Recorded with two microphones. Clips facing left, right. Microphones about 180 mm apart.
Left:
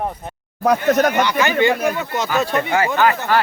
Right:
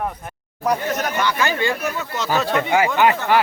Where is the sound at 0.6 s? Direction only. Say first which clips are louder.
Left 6 dB; 65° left (ahead or behind).